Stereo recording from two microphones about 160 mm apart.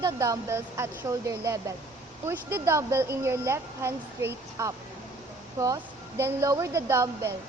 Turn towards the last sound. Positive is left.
turn(degrees=-15)  # may be behind; listen again after turning